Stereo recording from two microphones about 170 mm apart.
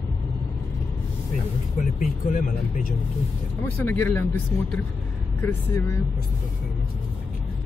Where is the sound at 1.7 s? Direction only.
55° left (ahead or behind).